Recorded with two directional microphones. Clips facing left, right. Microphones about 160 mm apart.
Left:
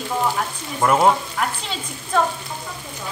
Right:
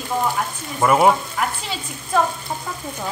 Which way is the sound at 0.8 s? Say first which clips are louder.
Right 1 dB; 5° right (ahead or behind).